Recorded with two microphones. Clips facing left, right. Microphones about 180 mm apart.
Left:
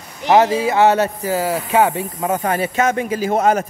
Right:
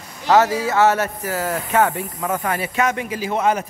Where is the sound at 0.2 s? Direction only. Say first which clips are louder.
Left 2 dB; 20° left (ahead or behind).